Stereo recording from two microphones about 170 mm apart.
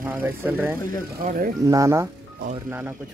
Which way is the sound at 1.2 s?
55° right (ahead or behind).